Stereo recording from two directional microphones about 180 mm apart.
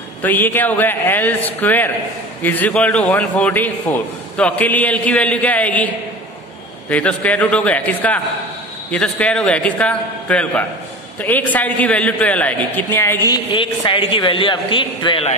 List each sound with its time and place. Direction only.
0.2 s a man's voice: 10° left (ahead or behind)
6.9 s a man's voice: 5° left (ahead or behind)
13.3 s a man's voice: 30° left (ahead or behind)